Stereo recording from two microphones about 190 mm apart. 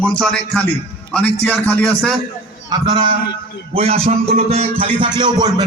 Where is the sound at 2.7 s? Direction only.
25° right (ahead or behind).